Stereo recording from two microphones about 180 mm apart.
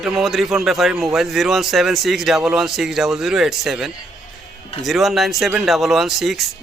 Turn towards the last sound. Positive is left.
turn(degrees=0)  # may be behind; listen again after turning